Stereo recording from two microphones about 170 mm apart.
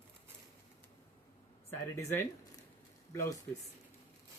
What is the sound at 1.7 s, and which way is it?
Speech, 15° left (ahead or behind).